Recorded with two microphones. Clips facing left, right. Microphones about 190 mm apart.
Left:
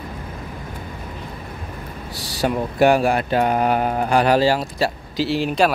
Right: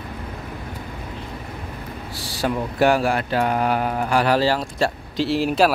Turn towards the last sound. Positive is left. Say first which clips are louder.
# even
turn(degrees=0)  # may be behind; listen again after turning